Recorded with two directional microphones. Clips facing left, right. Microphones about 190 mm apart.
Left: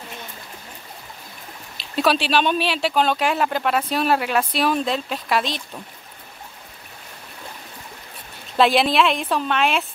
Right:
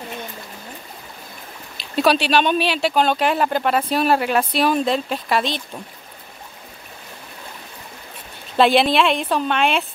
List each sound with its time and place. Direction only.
2.0 s speech: centre (ahead or behind)
8.5 s speech: centre (ahead or behind)